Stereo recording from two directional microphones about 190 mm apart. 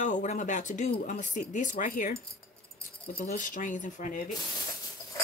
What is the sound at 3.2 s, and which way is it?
Speech, 40° left (ahead or behind).